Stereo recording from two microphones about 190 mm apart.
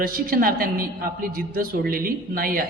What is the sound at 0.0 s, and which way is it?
A man's voice, 50° right (ahead or behind).